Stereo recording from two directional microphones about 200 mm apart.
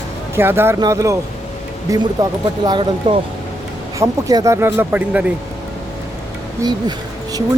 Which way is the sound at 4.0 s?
15° right (ahead or behind).